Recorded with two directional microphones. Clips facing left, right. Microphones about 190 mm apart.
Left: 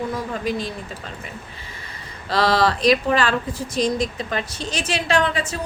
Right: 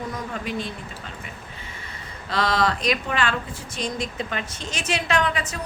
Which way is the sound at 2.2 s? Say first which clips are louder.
Left 4 dB; 35° left (ahead or behind).